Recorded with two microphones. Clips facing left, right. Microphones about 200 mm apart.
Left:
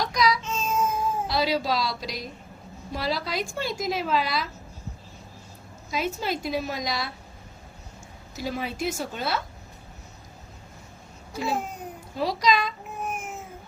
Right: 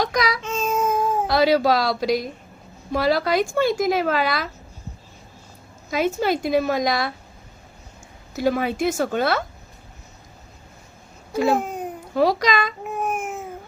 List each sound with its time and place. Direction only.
0.0 s baby cry: 55° right (ahead or behind)
2.9 s speech: 60° right (ahead or behind)
5.9 s speech: 60° right (ahead or behind)
8.4 s speech: 60° right (ahead or behind)
11.3 s speech: 60° right (ahead or behind)
12.1 s babbling: 55° right (ahead or behind)